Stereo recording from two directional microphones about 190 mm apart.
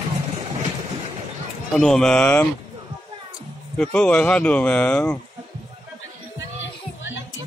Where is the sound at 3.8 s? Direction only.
5° left (ahead or behind).